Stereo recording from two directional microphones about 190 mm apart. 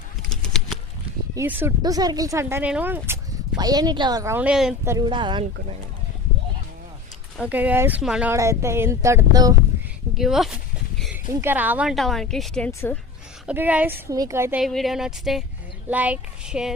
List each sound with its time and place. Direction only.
0.4 s a sound: centre (ahead or behind)
1.4 s speech: 10° right (ahead or behind)
3.6 s speech: 20° right (ahead or behind); by 4.7 s 5° right (ahead or behind)
4.9 s speech: 20° right (ahead or behind)
7.3 s speech: 5° right (ahead or behind)
10.2 s a sound: centre (ahead or behind)
11.3 s a woman's voice: 10° right (ahead or behind); by 13.0 s 5° left (ahead or behind)
13.5 s speech: 5° right (ahead or behind)
14.6 s a woman's voice: centre (ahead or behind)